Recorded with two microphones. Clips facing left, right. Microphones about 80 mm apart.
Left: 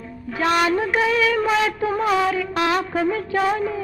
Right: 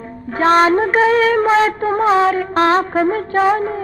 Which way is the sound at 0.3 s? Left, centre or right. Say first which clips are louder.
Right 7 dB; right.